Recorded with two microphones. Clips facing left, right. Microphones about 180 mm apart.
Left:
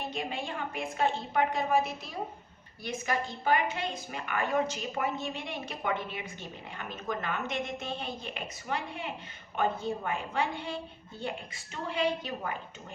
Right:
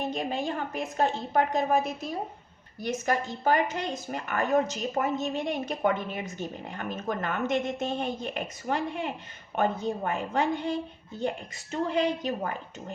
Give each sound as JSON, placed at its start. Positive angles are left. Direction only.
{"t": 0.1, "sound": "a woman's voice", "side_deg": -40}